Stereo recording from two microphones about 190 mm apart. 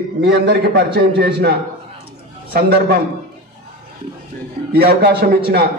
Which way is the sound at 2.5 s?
55° right (ahead or behind).